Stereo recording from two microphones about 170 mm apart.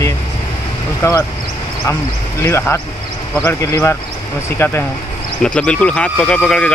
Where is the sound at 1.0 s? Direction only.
20° left (ahead or behind).